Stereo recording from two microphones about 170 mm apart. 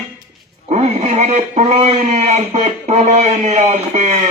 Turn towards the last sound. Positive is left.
turn(degrees=-45)  # may be behind; listen again after turning